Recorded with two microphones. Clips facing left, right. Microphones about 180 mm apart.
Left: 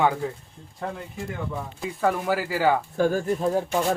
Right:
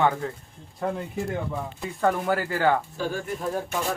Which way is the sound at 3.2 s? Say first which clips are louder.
Left 5 dB; 20° left (ahead or behind).